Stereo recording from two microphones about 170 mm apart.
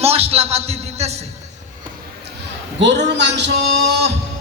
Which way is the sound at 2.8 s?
90° right.